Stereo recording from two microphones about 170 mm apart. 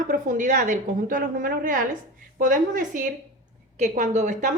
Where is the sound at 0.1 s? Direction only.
50° right (ahead or behind).